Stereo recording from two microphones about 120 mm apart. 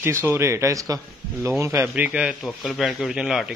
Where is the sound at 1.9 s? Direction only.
10° right (ahead or behind).